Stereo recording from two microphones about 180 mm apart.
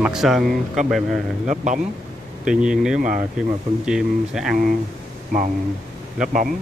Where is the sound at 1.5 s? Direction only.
45° right (ahead or behind).